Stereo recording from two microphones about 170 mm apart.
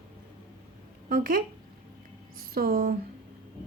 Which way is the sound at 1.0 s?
55° right (ahead or behind).